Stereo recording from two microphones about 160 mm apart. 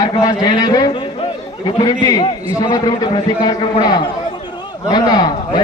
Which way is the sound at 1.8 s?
25° left (ahead or behind).